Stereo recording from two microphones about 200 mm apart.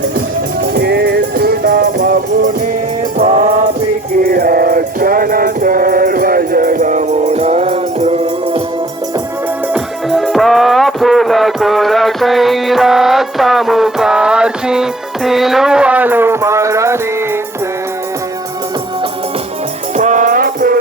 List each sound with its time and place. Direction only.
0.7 s music: 55° right (ahead or behind)
3.2 s music: 35° right (ahead or behind)
4.2 s music: 45° right (ahead or behind)
9.7 s music: centre (ahead or behind)
20.0 s music: 40° right (ahead or behind)